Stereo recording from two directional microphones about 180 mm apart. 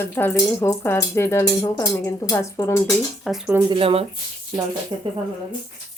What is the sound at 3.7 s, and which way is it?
Speech, 30° right (ahead or behind).